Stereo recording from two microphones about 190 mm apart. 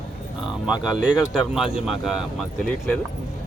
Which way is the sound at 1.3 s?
5° right (ahead or behind).